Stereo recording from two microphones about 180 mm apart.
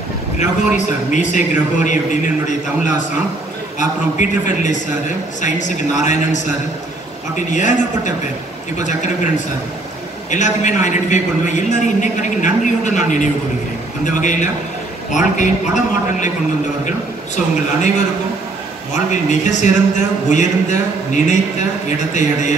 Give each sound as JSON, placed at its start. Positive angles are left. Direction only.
{"t": 0.4, "sound": "a man's voice", "side_deg": 40}
{"t": 10.3, "sound": "a man's voice", "side_deg": 40}
{"t": 19.0, "sound": "a man's voice", "side_deg": 40}